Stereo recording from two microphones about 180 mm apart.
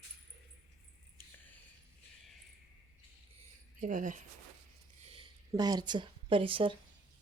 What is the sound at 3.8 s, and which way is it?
Speech, 45° right (ahead or behind).